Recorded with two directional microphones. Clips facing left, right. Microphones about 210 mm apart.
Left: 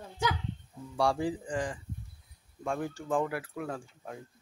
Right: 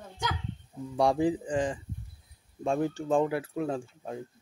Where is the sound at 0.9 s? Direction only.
20° right (ahead or behind).